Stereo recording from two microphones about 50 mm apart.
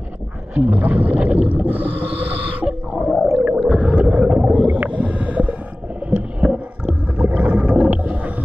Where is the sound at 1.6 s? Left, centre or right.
Right.